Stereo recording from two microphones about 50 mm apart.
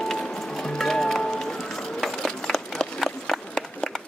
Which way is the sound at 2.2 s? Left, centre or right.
Centre.